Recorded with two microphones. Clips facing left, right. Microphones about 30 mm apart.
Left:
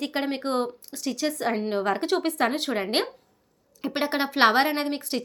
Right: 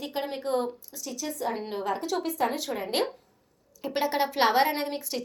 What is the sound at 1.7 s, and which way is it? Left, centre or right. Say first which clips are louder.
A woman's voice: left 5 dB; left.